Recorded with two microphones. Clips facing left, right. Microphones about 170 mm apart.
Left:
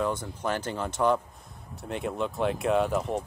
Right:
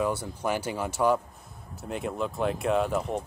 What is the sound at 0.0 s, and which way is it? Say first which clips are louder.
Speech: right 1 dB; 10° right (ahead or behind).